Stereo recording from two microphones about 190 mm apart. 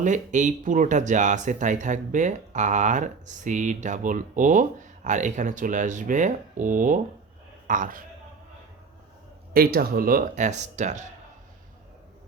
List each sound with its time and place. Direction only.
0.0 s speech: 40° right (ahead or behind)
9.5 s speech: 50° right (ahead or behind)